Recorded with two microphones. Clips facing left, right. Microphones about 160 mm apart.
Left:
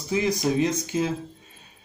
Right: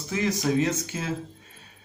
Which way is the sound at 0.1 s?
15° left (ahead or behind).